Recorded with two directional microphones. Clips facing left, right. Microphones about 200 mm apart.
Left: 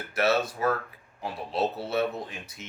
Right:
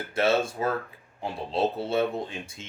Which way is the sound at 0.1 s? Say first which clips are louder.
Right 1 dB; 25° right (ahead or behind).